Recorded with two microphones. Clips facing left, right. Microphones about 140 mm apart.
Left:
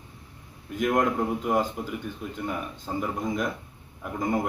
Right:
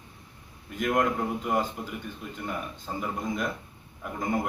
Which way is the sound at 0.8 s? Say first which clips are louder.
Left 2 dB; centre (ahead or behind).